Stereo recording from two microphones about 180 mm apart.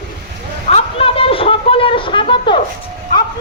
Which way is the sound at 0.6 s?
35° left (ahead or behind).